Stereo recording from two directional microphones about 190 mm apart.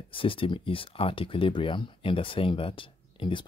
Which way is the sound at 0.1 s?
30° left (ahead or behind).